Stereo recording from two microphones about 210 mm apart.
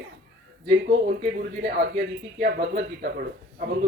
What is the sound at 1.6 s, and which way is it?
Speech, 50° right (ahead or behind).